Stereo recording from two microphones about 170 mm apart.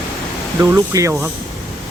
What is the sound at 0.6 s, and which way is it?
Speech, 15° right (ahead or behind).